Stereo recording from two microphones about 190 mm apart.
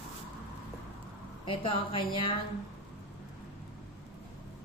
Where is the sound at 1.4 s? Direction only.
30° left (ahead or behind).